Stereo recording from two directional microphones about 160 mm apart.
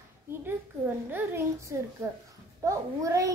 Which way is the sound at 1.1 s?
15° right (ahead or behind).